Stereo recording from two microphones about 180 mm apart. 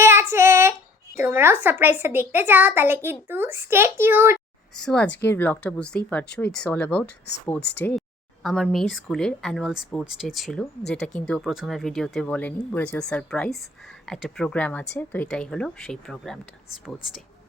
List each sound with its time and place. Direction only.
0.0 s a child's voice: 15° right (ahead or behind)
4.7 s speech: 5° left (ahead or behind)
7.6 s speech: 70° left (ahead or behind)
8.4 s speech: centre (ahead or behind)